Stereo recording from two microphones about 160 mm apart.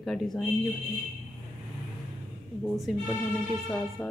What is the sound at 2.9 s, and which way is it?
Speech, centre (ahead or behind).